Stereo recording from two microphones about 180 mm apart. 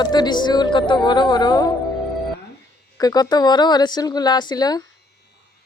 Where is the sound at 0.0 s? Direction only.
25° left (ahead or behind).